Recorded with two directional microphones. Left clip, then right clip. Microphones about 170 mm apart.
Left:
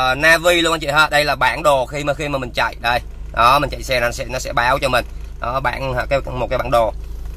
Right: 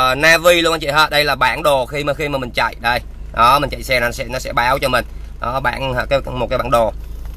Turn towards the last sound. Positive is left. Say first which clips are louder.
# right 1 dB
turn(degrees=-15)  # may be behind; listen again after turning